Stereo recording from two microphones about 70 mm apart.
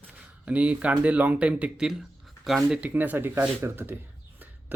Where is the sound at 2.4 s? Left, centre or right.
Centre.